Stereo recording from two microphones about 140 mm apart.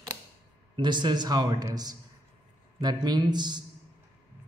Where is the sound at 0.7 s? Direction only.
35° right (ahead or behind).